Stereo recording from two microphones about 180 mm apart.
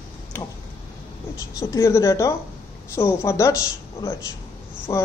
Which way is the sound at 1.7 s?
15° left (ahead or behind).